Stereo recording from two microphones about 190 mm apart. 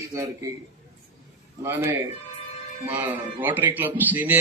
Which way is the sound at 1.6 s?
15° right (ahead or behind).